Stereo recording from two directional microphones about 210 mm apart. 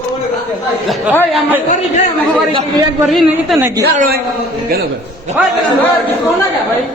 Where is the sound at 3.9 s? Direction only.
40° right (ahead or behind).